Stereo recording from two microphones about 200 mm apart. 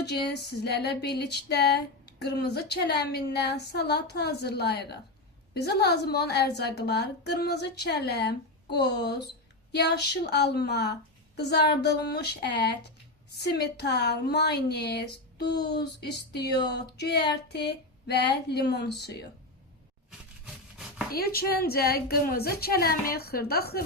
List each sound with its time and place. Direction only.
0.0 s a woman's voice: 55° left (ahead or behind)
20.1 s wood: 5° right (ahead or behind)
21.1 s a woman's voice: 50° left (ahead or behind)